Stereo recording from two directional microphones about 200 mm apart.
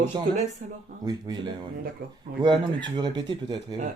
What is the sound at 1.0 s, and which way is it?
Speech, 20° right (ahead or behind).